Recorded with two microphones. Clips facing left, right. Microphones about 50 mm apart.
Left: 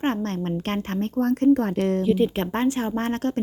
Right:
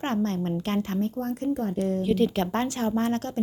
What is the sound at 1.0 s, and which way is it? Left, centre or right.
Speech, left.